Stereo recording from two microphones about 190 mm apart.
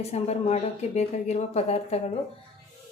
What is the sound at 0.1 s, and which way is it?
A woman's voice, 35° left (ahead or behind).